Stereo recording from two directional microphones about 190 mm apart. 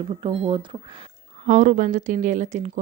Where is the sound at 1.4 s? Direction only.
45° right (ahead or behind).